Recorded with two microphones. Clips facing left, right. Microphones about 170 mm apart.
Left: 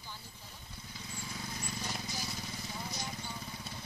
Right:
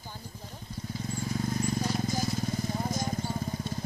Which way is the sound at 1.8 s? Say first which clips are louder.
Right 11 dB; 45° right (ahead or behind).